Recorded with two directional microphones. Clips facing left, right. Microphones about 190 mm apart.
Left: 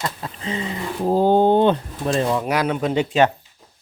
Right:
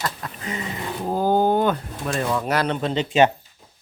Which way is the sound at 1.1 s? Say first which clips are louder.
Left 4 dB; 25° left (ahead or behind).